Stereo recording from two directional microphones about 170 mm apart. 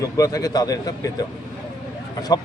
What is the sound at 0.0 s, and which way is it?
Speech, 20° left (ahead or behind).